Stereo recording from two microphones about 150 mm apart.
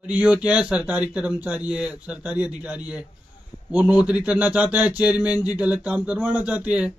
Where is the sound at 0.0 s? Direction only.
10° right (ahead or behind).